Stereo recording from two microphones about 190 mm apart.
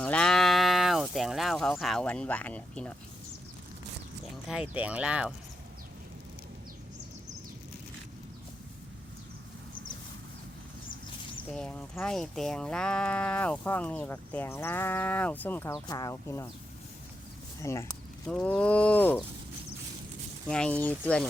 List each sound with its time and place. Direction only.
0.0 s livestock: 5° left (ahead or behind)
4.7 s speech: 5° right (ahead or behind)
11.5 s speech: 5° left (ahead or behind)
17.6 s speech: 15° left (ahead or behind)
20.5 s speech: 5° left (ahead or behind)